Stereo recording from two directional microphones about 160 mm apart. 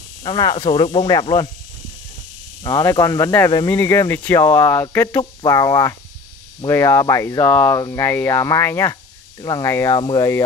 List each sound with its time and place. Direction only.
0.2 s speech: 25° left (ahead or behind)
2.6 s speech: 20° left (ahead or behind)